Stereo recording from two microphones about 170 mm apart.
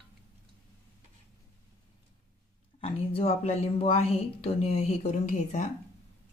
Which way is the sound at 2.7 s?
35° left (ahead or behind).